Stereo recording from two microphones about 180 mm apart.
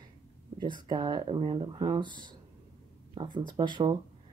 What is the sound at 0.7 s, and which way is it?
Speech, 25° right (ahead or behind).